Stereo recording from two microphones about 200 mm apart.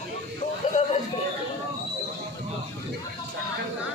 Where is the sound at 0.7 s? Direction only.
40° left (ahead or behind).